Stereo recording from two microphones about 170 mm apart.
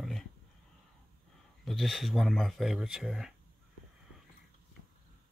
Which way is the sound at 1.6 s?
Centre (ahead or behind).